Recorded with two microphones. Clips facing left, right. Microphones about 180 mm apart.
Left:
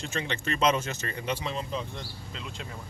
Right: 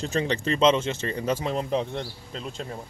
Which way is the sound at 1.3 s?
45° right (ahead or behind).